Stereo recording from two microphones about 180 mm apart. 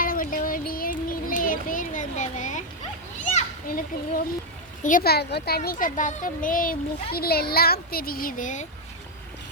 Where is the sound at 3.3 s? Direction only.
50° left (ahead or behind).